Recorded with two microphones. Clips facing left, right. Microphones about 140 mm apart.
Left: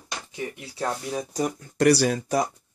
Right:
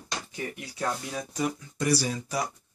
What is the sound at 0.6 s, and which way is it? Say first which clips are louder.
Speech: left 2 dB; 30° left (ahead or behind).